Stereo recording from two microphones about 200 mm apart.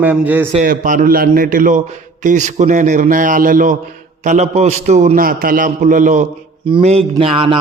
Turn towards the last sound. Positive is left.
turn(degrees=-25)  # may be behind; listen again after turning